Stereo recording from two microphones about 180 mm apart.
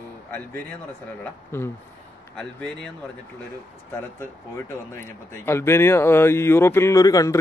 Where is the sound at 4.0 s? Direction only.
15° left (ahead or behind).